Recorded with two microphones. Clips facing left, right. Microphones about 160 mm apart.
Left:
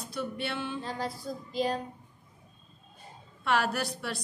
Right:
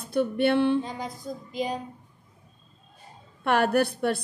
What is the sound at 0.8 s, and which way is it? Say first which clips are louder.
Speech: even; 15° right (ahead or behind).